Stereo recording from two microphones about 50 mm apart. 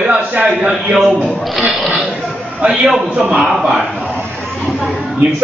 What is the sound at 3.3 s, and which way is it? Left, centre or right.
Speech, centre.